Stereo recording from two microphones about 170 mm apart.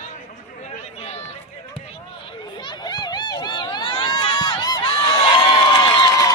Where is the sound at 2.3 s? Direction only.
25° left (ahead or behind).